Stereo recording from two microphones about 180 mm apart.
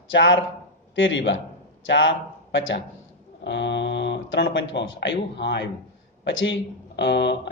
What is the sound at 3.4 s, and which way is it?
Speech, 75° left (ahead or behind).